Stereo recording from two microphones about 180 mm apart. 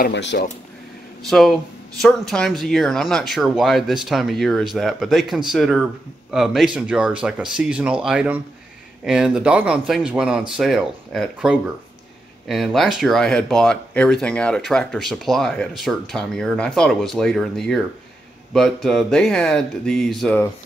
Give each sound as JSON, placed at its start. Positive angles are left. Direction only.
{"t": 0.0, "sound": "speech", "side_deg": 75}
{"t": 1.3, "sound": "speech", "side_deg": 0}